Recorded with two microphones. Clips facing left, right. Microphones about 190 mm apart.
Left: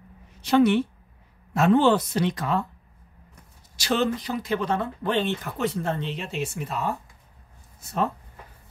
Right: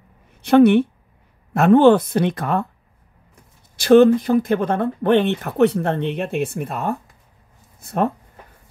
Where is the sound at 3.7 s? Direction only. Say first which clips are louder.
Right 13 dB; 55° right (ahead or behind).